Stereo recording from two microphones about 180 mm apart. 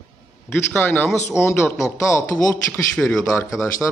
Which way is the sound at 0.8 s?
10° left (ahead or behind).